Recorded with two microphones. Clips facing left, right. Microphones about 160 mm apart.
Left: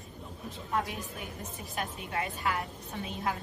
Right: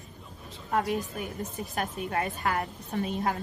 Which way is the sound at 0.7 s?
45° right (ahead or behind).